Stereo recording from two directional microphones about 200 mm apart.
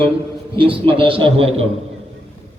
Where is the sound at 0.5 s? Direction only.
25° right (ahead or behind).